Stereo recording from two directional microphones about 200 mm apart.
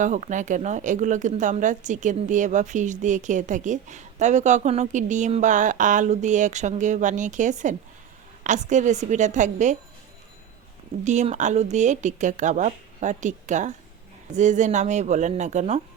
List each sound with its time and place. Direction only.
0.0 s speech: 40° right (ahead or behind)
11.0 s speech: 35° right (ahead or behind)